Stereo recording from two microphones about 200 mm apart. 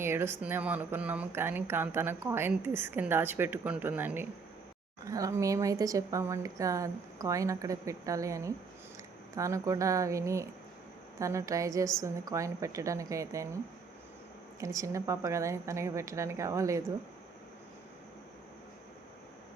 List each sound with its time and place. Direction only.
0.0 s speech: 10° right (ahead or behind)
14.6 s speech: 15° right (ahead or behind)